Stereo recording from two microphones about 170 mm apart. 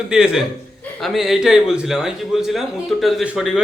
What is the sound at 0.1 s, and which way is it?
A man's voice, 5° right (ahead or behind).